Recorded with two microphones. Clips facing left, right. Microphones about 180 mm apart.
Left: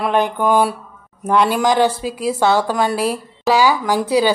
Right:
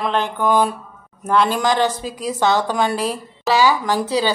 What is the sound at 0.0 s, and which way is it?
A woman's voice, 10° left (ahead or behind).